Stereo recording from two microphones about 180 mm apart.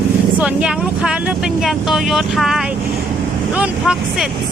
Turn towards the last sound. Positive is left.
turn(degrees=-5)  # may be behind; listen again after turning